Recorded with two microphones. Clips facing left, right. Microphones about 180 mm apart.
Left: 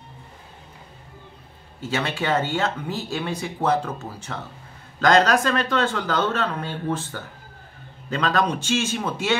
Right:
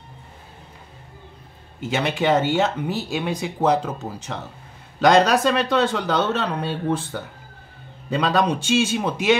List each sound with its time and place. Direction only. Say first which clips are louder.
1.8 s speech: right 3 dB; 15° right (ahead or behind)